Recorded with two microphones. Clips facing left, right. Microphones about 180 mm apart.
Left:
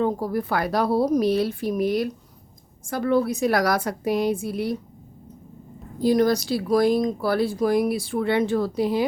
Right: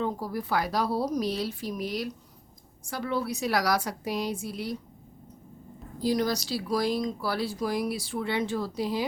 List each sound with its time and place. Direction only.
0.0 s a woman's voice: 55° left (ahead or behind)
6.0 s speech: 55° left (ahead or behind)